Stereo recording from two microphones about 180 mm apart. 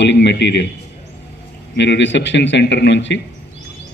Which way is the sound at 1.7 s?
80° left.